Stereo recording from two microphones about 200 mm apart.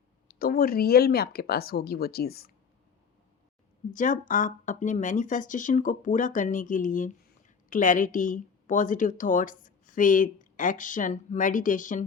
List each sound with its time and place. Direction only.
0.3 s speech: 45° left (ahead or behind)
3.9 s speech: 40° left (ahead or behind)